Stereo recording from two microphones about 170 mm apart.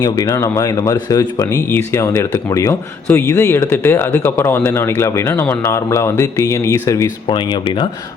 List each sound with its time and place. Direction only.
0.0 s speech: 20° left (ahead or behind)